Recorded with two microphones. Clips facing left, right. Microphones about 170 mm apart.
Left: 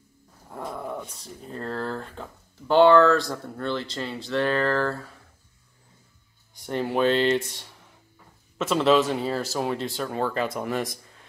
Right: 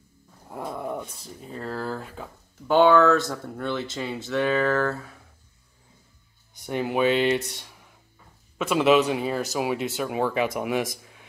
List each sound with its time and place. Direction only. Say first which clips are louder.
0.5 s dog: right 2 dB; 10° right (ahead or behind)
1.5 s speech: even; 5° right (ahead or behind)
6.6 s speech: even; 5° right (ahead or behind)
8.5 s speech: right 1 dB; 15° right (ahead or behind)
11.0 s a sound: right 2 dB; 5° right (ahead or behind)